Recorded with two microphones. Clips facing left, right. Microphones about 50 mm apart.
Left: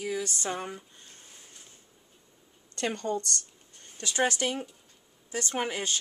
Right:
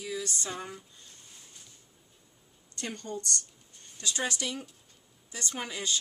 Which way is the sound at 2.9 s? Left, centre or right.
Left.